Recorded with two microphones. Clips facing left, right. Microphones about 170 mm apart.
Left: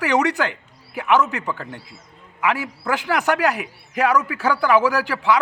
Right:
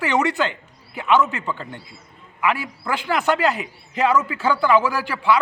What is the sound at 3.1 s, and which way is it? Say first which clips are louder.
A man's voice: right 1 dB; 15° left (ahead or behind).